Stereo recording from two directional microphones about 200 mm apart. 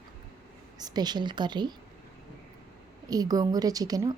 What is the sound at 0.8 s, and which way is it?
Speech, 20° right (ahead or behind).